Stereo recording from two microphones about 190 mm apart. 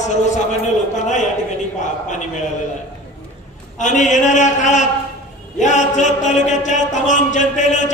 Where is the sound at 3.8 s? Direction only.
40° left (ahead or behind).